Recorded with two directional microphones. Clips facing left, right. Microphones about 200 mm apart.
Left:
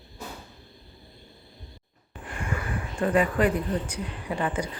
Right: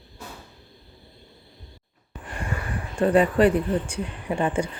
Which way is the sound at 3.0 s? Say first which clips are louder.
Right 5 dB; 35° right (ahead or behind).